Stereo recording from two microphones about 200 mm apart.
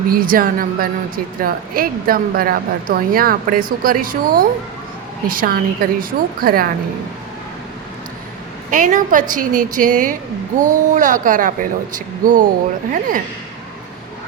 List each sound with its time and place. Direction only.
0.1 s a woman's voice: 45° right (ahead or behind)
8.7 s a woman's voice: 40° right (ahead or behind)